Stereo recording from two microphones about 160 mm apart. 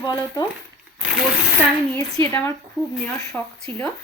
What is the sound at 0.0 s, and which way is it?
Speech, 25° left (ahead or behind).